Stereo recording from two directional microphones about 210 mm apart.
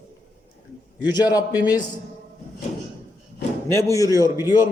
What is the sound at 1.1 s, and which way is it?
Speech, 20° left (ahead or behind).